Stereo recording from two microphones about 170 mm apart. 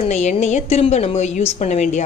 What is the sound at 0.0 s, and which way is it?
A woman's voice, 45° left (ahead or behind).